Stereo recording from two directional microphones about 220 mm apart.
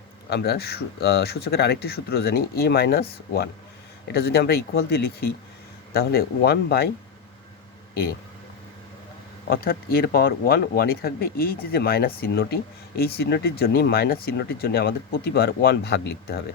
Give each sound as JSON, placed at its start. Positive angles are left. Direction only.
{"t": 0.3, "sound": "speech", "side_deg": 45}
{"t": 4.1, "sound": "speech", "side_deg": 45}
{"t": 9.5, "sound": "speech", "side_deg": 45}